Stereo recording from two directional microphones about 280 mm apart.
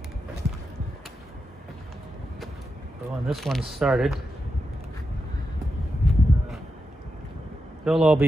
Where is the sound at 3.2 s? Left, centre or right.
Centre.